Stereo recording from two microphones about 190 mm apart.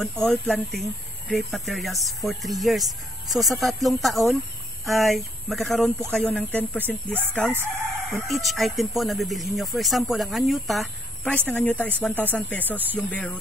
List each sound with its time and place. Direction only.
0.0 s speech: 5° left (ahead or behind)